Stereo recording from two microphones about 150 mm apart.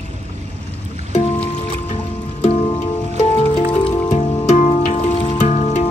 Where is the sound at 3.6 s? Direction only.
50° left (ahead or behind).